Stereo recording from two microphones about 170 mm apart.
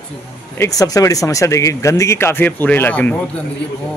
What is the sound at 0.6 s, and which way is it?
Speech, 20° left (ahead or behind).